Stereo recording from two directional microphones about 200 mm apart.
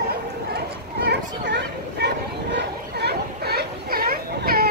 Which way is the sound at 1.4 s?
55° right (ahead or behind).